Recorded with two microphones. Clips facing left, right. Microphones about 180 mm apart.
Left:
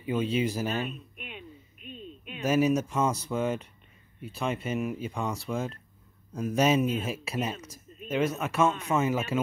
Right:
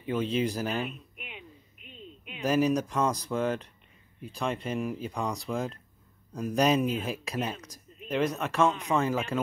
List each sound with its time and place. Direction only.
0.0 s speech: 5° left (ahead or behind)
0.7 s a sound: 10° right (ahead or behind)
2.4 s speech: 5° left (ahead or behind)